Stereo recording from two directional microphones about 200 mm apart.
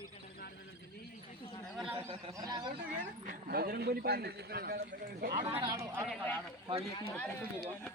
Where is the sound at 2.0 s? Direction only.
25° right (ahead or behind).